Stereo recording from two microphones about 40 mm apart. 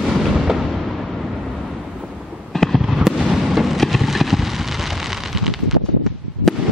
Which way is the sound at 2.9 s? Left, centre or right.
Centre.